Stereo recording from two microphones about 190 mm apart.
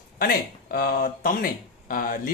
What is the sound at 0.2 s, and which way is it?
Speech, 50° left (ahead or behind).